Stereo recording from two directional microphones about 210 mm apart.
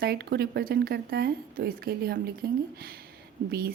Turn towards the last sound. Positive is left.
turn(degrees=-45)  # may be behind; listen again after turning